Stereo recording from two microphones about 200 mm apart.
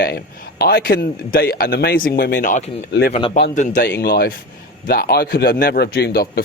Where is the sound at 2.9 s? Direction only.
55° left (ahead or behind).